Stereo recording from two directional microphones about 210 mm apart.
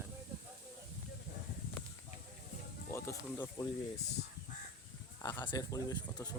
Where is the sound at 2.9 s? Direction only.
15° left (ahead or behind).